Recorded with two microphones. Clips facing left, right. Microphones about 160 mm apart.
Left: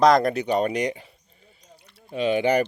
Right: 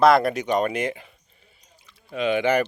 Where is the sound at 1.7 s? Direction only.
65° left (ahead or behind).